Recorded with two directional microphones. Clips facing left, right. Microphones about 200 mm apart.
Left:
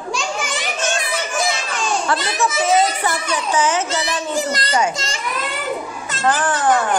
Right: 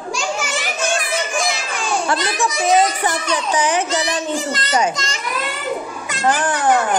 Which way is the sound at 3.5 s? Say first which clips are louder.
Left 1 dB; 15° right (ahead or behind).